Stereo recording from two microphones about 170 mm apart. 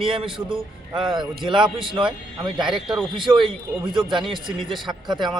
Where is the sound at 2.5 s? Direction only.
25° right (ahead or behind).